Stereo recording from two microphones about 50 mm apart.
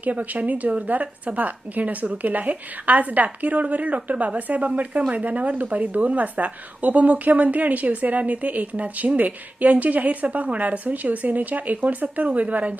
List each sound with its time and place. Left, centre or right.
0.0 s a woman's voice: right